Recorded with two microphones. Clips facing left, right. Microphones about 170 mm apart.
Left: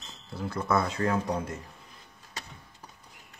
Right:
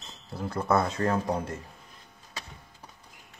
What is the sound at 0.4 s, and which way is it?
Speech, 30° right (ahead or behind).